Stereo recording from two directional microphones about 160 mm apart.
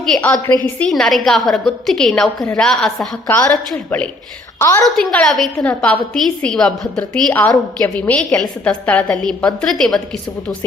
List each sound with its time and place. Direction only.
0.0 s a woman's voice: 5° left (ahead or behind)
4.9 s a woman's voice: 5° left (ahead or behind)